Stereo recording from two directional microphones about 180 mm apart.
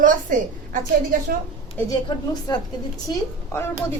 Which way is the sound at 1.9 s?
20° left (ahead or behind).